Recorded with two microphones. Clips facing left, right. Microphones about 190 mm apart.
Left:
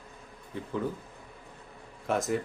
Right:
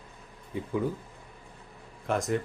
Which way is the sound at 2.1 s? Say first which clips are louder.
Even; centre (ahead or behind).